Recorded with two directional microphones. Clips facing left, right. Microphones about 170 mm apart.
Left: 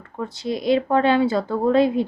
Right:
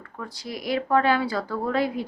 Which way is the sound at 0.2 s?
25° left (ahead or behind).